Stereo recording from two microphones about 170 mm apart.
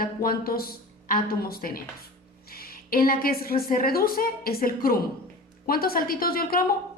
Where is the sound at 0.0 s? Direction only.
60° left (ahead or behind).